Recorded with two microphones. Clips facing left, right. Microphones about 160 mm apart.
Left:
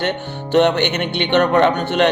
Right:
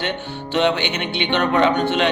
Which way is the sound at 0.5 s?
55° left (ahead or behind).